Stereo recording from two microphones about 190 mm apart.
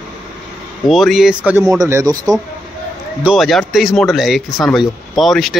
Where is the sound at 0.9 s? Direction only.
Centre (ahead or behind); by 2.4 s 20° right (ahead or behind).